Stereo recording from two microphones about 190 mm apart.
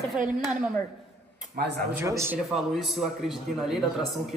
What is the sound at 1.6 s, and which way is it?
Speech, 55° right (ahead or behind).